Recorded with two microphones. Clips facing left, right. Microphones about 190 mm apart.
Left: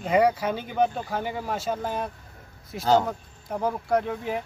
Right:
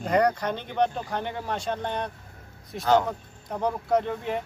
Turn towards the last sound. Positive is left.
turn(degrees=0)  # may be behind; listen again after turning